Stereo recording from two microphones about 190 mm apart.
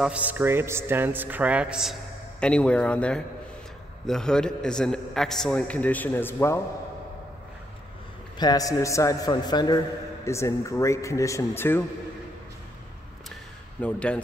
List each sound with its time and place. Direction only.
0.0 s a man's voice: 5° right (ahead or behind); by 6.6 s 10° left (ahead or behind)
8.4 s a man's voice: 20° left (ahead or behind)
13.7 s a man's voice: 5° left (ahead or behind)